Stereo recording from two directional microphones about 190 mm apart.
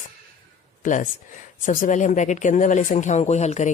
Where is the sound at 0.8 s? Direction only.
45° left (ahead or behind).